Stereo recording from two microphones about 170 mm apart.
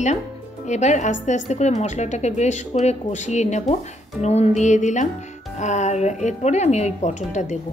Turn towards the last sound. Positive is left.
turn(degrees=45)  # may be behind; listen again after turning